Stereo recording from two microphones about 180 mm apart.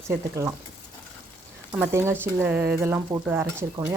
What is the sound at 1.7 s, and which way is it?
Speech, 10° right (ahead or behind).